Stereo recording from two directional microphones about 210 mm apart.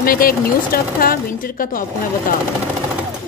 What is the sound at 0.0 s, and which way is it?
Speech, 45° left (ahead or behind).